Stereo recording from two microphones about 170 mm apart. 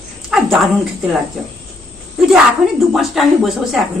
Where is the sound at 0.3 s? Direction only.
Centre (ahead or behind).